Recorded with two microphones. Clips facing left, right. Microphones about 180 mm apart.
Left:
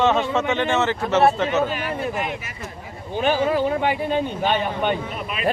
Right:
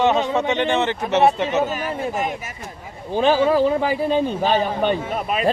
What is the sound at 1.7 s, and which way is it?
Speech, 45° right (ahead or behind).